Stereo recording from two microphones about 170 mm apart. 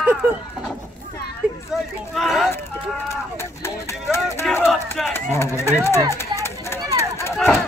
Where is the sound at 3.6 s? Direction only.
15° left (ahead or behind).